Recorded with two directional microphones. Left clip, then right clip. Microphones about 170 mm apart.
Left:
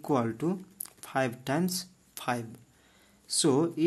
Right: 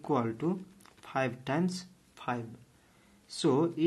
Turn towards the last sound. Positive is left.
turn(degrees=20)  # may be behind; listen again after turning